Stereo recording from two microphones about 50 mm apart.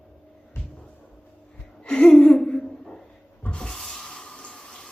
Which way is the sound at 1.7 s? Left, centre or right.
Centre.